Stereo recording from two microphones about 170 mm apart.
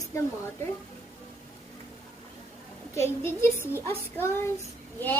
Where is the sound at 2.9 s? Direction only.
15° left (ahead or behind).